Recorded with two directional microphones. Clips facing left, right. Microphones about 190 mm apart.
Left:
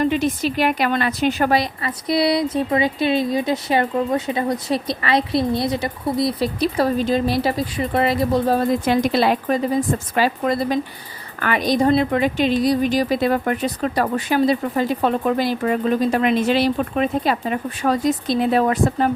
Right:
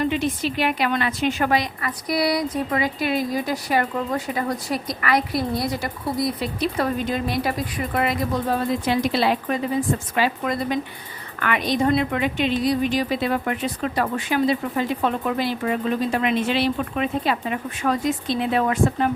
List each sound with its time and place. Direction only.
0.0 s a woman's voice: 40° left (ahead or behind)